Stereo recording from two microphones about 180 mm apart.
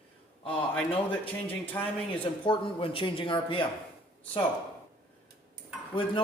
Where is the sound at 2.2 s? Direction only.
30° left (ahead or behind).